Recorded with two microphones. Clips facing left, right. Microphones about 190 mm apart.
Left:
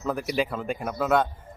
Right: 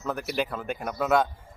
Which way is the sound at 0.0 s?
5° right (ahead or behind).